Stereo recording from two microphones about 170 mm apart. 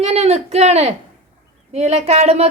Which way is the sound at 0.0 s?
35° right (ahead or behind).